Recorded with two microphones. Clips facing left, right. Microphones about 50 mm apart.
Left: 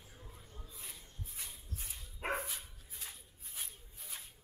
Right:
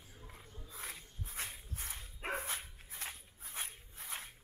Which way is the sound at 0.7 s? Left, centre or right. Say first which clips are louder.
Right 6 dB; right.